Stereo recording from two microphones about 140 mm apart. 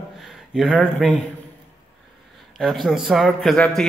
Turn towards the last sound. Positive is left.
turn(degrees=5)  # may be behind; listen again after turning